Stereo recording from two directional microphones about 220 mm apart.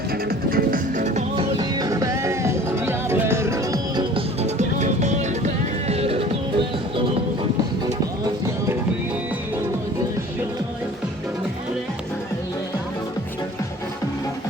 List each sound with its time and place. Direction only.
0.1 s music: 40° right (ahead or behind)
8.2 s music: 15° right (ahead or behind)